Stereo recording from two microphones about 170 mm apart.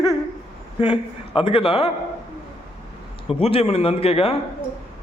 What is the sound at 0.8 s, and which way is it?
A man's voice, 30° left (ahead or behind).